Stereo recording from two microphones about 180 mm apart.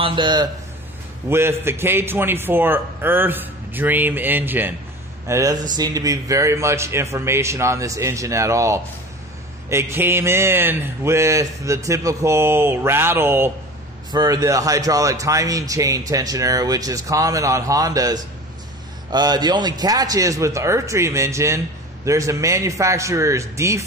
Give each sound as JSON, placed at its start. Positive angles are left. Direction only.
{"t": 0.0, "sound": "a man's voice", "side_deg": -25}
{"t": 1.3, "sound": "speech", "side_deg": -15}